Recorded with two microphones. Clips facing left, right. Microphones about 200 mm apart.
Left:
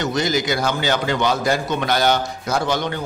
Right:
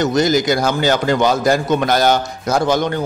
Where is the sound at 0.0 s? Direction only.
45° right (ahead or behind).